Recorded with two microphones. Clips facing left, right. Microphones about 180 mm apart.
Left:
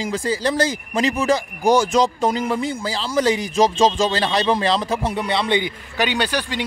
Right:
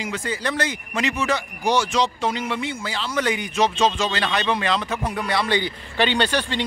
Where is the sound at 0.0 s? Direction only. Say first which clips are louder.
Left 5 dB; 30° left (ahead or behind).